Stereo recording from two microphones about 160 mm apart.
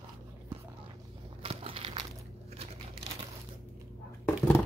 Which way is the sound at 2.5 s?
40° right (ahead or behind).